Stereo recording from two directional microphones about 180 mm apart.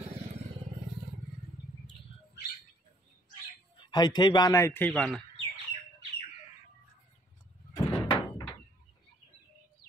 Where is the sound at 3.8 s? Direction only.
25° left (ahead or behind).